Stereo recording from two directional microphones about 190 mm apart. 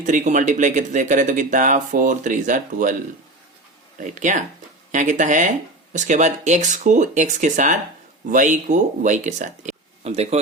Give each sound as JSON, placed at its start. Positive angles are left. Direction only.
{"t": 0.0, "sound": "speech", "side_deg": -40}
{"t": 4.2, "sound": "speech", "side_deg": -40}